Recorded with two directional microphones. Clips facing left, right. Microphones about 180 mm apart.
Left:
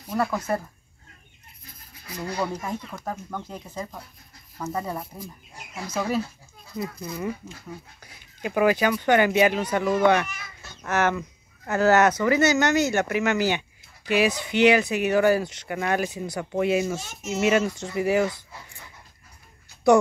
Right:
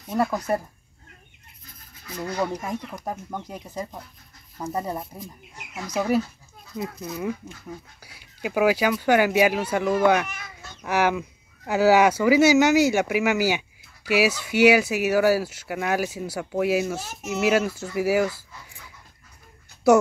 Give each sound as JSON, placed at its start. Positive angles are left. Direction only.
{"t": 0.2, "sound": "speech", "side_deg": -15}
{"t": 2.4, "sound": "speech", "side_deg": -15}
{"t": 5.9, "sound": "a child's voice", "side_deg": -10}